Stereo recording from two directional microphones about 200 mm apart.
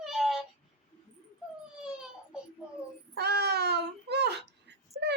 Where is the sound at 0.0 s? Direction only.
Centre (ahead or behind).